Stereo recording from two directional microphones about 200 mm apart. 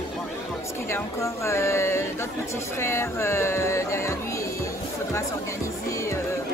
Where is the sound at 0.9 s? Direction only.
15° left (ahead or behind).